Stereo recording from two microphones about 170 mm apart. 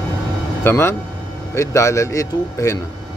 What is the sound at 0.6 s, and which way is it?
Speech, 15° left (ahead or behind).